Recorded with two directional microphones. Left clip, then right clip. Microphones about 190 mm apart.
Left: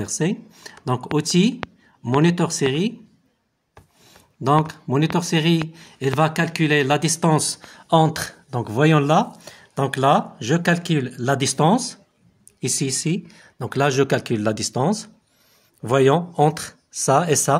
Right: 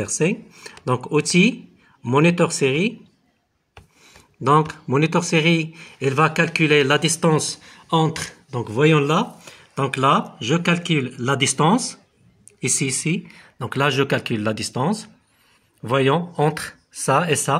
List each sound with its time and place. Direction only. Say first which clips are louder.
0.0 s speech: right 3 dB; 50° left (ahead or behind)
4.0 s speech: right 2 dB; 45° left (ahead or behind)